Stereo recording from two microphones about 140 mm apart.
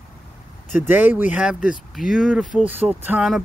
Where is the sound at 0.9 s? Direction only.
10° right (ahead or behind).